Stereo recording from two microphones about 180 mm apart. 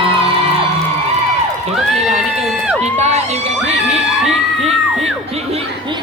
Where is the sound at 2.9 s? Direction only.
40° right (ahead or behind).